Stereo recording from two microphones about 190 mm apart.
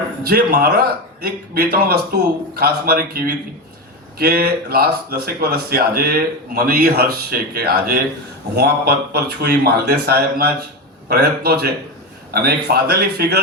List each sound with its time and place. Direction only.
0.2 s speech: 50° right (ahead or behind)